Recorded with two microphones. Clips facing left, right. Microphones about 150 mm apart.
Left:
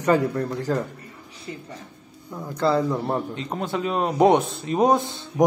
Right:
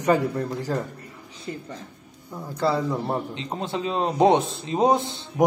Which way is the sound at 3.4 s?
25° right (ahead or behind).